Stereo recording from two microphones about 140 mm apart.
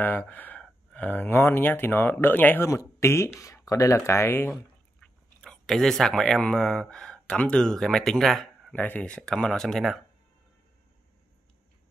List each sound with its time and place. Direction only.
0.0 s speech: 15° left (ahead or behind)
5.0 s speech: 5° left (ahead or behind)
8.7 s speech: 10° left (ahead or behind)